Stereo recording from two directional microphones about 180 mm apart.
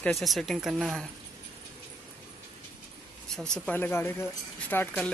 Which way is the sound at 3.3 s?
5° left (ahead or behind).